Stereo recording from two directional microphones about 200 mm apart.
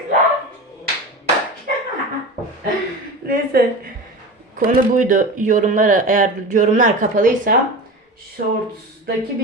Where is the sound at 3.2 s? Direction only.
50° right (ahead or behind).